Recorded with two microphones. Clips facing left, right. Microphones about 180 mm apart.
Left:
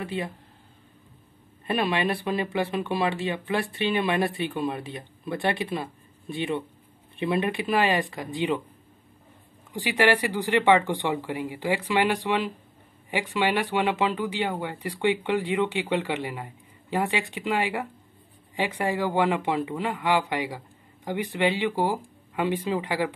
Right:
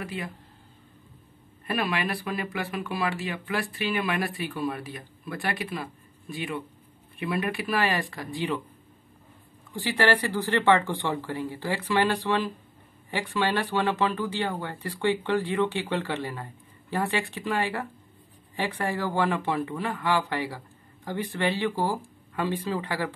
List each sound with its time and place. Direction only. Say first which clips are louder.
0.0 s speech: left 4 dB; 25° left (ahead or behind)
1.7 s speech: left 3 dB; 25° left (ahead or behind)
9.7 s speech: left 2 dB; 15° left (ahead or behind)